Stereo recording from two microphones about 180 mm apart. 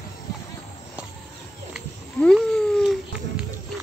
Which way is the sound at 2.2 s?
Centre (ahead or behind).